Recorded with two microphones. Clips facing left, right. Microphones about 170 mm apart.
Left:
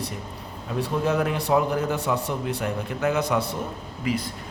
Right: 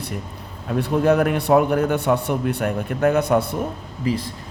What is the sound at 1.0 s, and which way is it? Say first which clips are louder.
A man's voice: right 7 dB; 60° right (ahead or behind).